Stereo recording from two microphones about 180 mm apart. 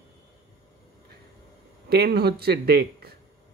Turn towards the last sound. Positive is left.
turn(degrees=-60)  # may be behind; listen again after turning